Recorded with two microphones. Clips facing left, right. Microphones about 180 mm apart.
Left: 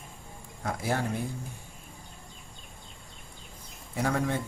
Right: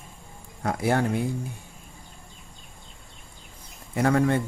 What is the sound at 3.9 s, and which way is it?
Speech, 65° right (ahead or behind).